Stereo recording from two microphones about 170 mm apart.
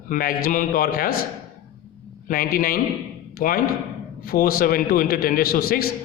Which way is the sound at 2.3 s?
60° left (ahead or behind).